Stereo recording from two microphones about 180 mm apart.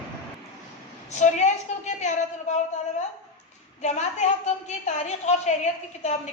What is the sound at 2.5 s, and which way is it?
Speech, 40° left (ahead or behind).